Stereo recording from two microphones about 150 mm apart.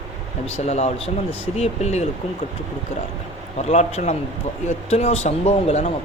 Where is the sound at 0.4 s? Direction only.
45° left (ahead or behind).